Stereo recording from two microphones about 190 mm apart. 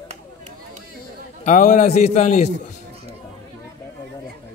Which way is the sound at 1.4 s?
45° left (ahead or behind).